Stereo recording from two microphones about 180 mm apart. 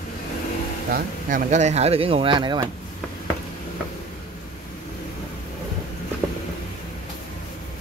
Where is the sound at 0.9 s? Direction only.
45° right (ahead or behind); by 2.7 s 25° right (ahead or behind).